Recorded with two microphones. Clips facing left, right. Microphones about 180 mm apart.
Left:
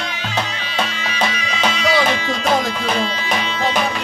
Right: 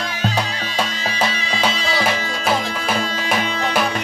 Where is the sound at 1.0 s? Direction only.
30° right (ahead or behind).